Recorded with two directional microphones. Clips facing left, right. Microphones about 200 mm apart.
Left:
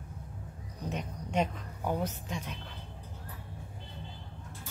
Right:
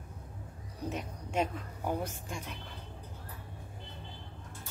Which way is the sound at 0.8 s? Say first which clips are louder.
Even; 5° right (ahead or behind).